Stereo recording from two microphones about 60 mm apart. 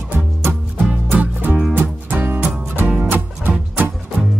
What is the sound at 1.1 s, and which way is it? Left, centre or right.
Music, right.